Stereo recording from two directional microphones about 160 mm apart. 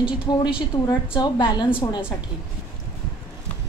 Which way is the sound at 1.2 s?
30° left (ahead or behind).